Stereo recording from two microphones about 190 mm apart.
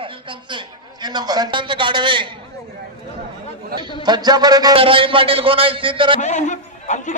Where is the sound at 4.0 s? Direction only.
20° right (ahead or behind).